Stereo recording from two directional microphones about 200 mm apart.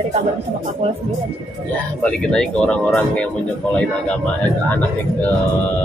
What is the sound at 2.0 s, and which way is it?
Speech, 5° left (ahead or behind).